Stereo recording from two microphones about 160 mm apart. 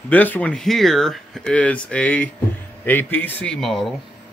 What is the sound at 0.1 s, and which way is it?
Speech, 10° left (ahead or behind).